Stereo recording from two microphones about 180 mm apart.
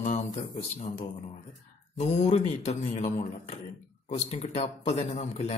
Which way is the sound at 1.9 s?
40° left (ahead or behind).